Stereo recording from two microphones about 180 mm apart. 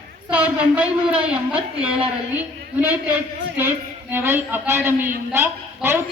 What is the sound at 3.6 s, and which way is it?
A man's voice, 10° right (ahead or behind).